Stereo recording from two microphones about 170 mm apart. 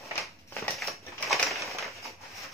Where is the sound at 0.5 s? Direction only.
Centre (ahead or behind).